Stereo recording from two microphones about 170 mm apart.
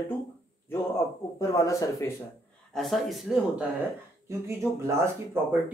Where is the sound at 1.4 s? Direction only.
20° left (ahead or behind).